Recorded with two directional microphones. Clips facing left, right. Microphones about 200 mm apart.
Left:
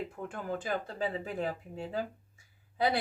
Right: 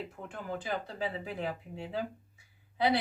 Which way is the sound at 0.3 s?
45° left (ahead or behind).